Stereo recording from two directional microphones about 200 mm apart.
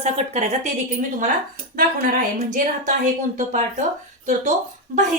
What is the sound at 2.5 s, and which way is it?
A woman's voice, 40° right (ahead or behind).